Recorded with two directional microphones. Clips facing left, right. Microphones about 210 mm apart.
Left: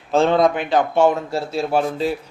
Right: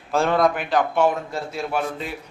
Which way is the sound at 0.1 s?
25° left (ahead or behind).